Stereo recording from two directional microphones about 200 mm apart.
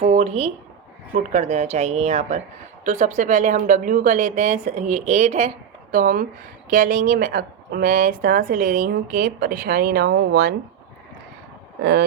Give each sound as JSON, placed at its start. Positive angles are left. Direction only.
{"t": 0.0, "sound": "a woman's voice", "side_deg": -35}
{"t": 11.8, "sound": "speech", "side_deg": -55}